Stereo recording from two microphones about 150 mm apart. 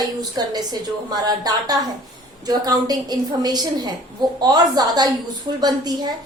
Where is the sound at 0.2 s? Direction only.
25° right (ahead or behind).